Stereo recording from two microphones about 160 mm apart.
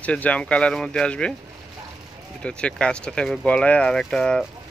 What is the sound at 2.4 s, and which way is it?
Speech, 5° left (ahead or behind).